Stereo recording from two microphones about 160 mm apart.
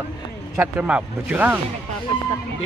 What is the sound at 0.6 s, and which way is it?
Speech, 5° right (ahead or behind).